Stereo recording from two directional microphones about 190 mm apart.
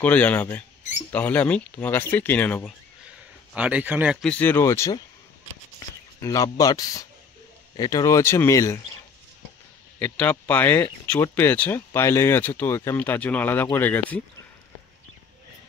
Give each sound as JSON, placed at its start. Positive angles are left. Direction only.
{"t": 0.0, "sound": "speech", "side_deg": 10}
{"t": 3.5, "sound": "speech", "side_deg": -5}
{"t": 6.2, "sound": "speech", "side_deg": 20}
{"t": 9.9, "sound": "speech", "side_deg": 5}